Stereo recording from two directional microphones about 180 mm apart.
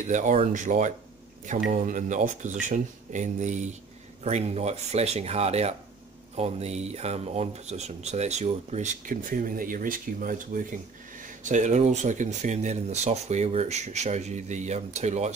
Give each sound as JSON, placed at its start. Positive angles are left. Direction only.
{"t": 0.0, "sound": "speech", "side_deg": -45}